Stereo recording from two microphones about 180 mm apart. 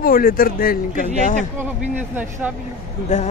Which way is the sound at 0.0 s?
50° left (ahead or behind).